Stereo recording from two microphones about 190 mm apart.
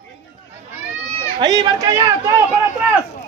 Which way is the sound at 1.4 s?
20° right (ahead or behind).